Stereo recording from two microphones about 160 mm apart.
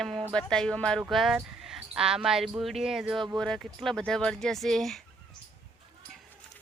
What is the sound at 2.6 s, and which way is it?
Speech, centre (ahead or behind).